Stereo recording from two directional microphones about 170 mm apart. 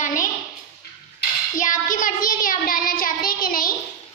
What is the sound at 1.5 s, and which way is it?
Child singing, 50° left (ahead or behind).